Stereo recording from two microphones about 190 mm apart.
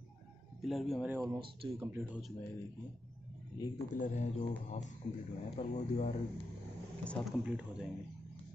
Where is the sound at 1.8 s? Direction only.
10° right (ahead or behind).